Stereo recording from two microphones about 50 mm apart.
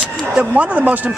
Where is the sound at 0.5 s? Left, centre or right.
Right.